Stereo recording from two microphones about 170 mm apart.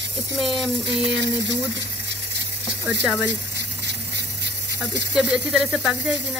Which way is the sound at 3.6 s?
85° right.